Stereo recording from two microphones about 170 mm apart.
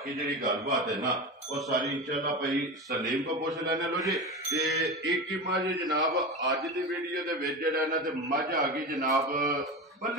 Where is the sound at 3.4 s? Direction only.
20° right (ahead or behind).